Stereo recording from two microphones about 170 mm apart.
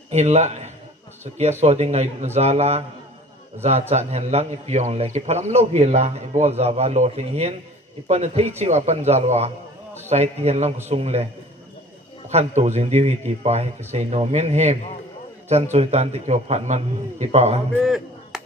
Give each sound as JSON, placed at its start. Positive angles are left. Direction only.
{"t": 0.1, "sound": "a man's voice", "side_deg": -40}
{"t": 12.3, "sound": "speech", "side_deg": -40}
{"t": 17.8, "sound": "chop", "side_deg": 0}